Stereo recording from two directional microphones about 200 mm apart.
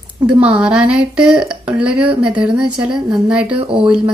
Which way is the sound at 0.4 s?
5° right (ahead or behind).